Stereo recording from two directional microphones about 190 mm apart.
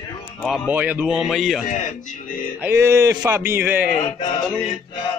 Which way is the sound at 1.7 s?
40° left (ahead or behind).